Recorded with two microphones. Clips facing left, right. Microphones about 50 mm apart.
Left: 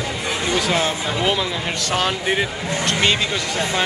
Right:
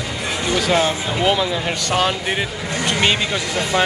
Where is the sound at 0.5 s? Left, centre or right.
Centre.